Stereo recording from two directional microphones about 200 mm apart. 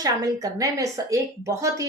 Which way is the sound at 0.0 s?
15° right (ahead or behind).